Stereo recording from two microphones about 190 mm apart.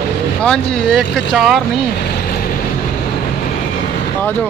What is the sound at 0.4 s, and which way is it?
Speech, 5° left (ahead or behind).